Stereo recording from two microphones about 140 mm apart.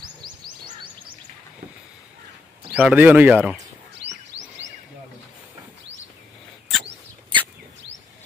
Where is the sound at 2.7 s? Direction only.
10° right (ahead or behind).